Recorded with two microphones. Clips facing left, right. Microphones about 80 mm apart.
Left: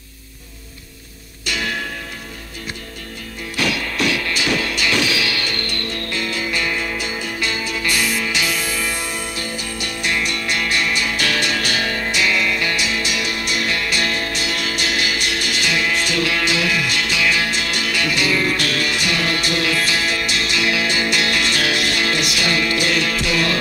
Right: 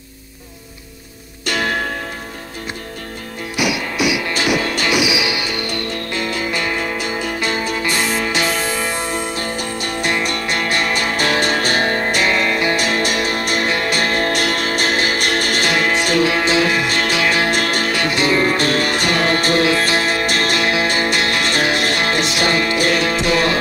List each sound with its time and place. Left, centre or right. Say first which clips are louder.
1.4 s music: right 5 dB; right
3.5 s music: right 2 dB; centre
4.6 s music: right 3 dB; right
4.9 s music: right 2 dB; centre
6.3 s music: right 1 dB; right
16.3 s music: right 4 dB; right